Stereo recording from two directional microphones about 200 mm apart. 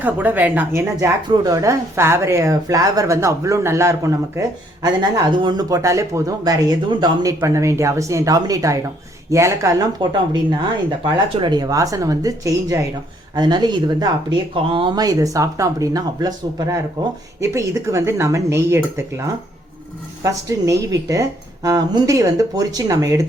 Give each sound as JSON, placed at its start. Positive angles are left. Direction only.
{"t": 0.0, "sound": "speech", "side_deg": -10}
{"t": 11.3, "sound": "speech", "side_deg": -20}
{"t": 20.2, "sound": "speech", "side_deg": -15}